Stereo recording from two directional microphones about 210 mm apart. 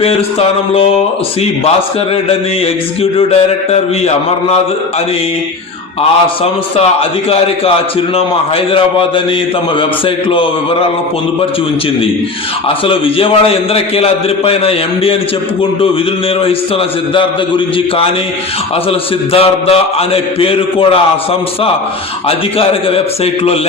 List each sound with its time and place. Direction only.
0.0 s a man's voice: 25° left (ahead or behind)
3.0 s a man's voice: 30° left (ahead or behind)
6.0 s a man's voice: 30° left (ahead or behind)
8.1 s a man's voice: 25° left (ahead or behind)
10.2 s a man's voice: 25° left (ahead or behind)
12.6 s a man's voice: 25° left (ahead or behind)
18.9 s a man's voice: 25° left (ahead or behind)
22.3 s a man's voice: 25° left (ahead or behind)